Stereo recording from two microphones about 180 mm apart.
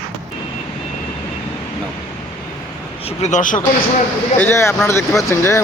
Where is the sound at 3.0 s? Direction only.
40° left (ahead or behind).